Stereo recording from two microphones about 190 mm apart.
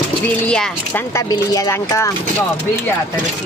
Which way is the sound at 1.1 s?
15° left (ahead or behind).